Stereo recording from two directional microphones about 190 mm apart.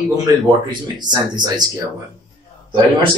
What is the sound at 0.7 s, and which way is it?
Speech, 25° right (ahead or behind).